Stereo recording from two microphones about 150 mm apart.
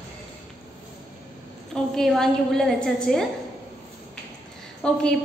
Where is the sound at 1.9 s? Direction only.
Centre (ahead or behind).